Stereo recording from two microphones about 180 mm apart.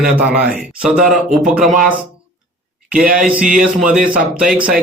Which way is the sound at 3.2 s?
5° right (ahead or behind).